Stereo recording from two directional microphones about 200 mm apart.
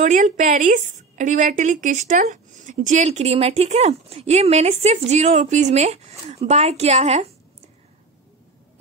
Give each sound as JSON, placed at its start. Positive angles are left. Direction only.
{"t": 0.0, "sound": "a woman's voice", "side_deg": -40}